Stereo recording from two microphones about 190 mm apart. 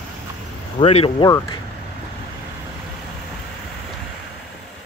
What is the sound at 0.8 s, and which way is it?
Speech, 30° left (ahead or behind).